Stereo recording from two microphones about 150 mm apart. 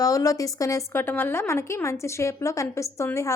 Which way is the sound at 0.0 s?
20° left (ahead or behind).